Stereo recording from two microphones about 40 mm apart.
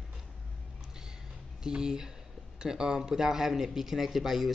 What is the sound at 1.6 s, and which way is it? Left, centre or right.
A man's voice, centre.